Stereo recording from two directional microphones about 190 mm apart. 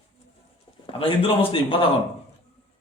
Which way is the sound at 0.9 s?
30° left (ahead or behind).